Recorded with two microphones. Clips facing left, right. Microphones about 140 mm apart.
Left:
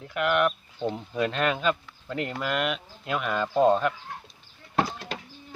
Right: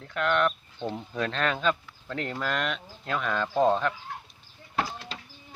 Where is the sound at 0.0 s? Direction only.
10° left (ahead or behind).